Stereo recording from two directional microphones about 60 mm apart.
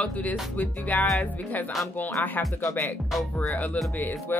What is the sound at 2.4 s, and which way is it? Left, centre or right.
Speech, left.